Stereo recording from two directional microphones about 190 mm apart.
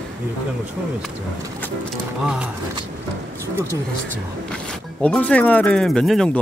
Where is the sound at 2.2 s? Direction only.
5° right (ahead or behind).